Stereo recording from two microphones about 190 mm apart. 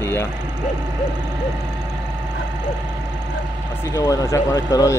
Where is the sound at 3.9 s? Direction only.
15° left (ahead or behind).